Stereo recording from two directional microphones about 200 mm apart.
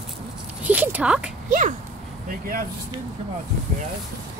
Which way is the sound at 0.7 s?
10° right (ahead or behind).